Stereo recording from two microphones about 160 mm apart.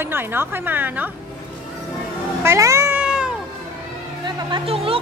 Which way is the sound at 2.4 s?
15° right (ahead or behind).